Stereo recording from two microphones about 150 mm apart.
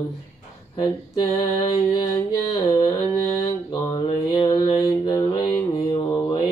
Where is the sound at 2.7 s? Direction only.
25° left (ahead or behind).